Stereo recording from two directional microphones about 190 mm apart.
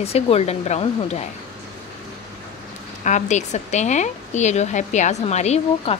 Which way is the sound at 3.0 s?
40° left (ahead or behind).